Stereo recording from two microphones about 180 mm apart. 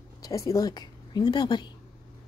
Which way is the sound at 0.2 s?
20° left (ahead or behind).